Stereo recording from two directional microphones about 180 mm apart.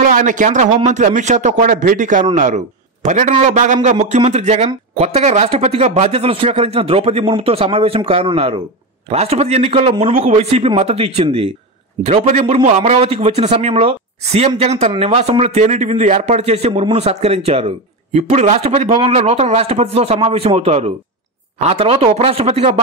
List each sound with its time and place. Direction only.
0.0 s a man's voice: 45° right (ahead or behind)